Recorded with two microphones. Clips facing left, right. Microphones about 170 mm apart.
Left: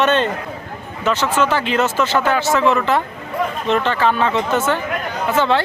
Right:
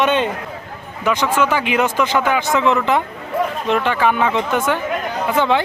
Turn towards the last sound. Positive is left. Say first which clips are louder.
# even
turn(degrees=-15)  # may be behind; listen again after turning